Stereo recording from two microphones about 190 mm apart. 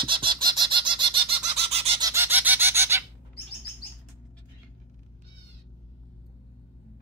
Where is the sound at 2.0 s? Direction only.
10° right (ahead or behind).